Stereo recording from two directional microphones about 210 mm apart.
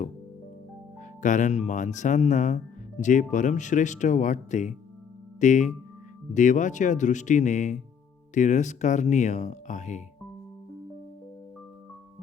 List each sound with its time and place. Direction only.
1.2 s speech: 35° left (ahead or behind)